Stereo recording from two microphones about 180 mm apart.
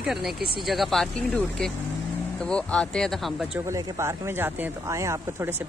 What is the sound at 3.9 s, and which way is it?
Speech, 15° right (ahead or behind).